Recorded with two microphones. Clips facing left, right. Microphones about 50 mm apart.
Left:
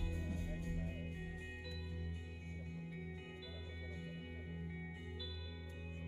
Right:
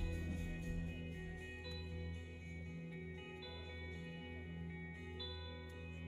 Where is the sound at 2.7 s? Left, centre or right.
Centre.